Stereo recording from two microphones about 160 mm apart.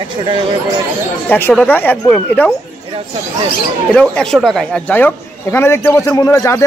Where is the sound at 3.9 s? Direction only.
5° left (ahead or behind).